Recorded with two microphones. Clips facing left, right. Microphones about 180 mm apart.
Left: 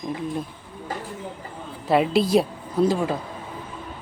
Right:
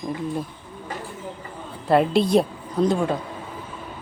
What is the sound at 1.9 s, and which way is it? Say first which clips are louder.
Speech: right 1 dB; centre (ahead or behind).